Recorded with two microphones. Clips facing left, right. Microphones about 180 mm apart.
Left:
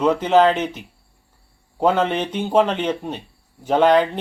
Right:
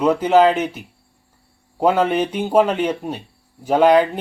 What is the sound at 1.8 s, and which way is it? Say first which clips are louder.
Speech: right 2 dB; 10° right (ahead or behind).